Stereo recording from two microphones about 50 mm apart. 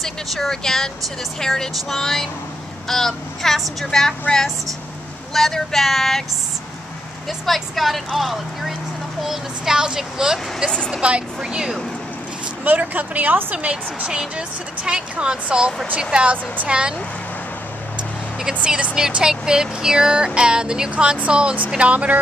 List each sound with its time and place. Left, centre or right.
0.0 s a woman's voice: centre
5.3 s speech: centre
7.2 s speech: centre
11.0 s a woman's voice: right
12.6 s speech: right
13.6 s a woman's voice: right
18.5 s a woman's voice: right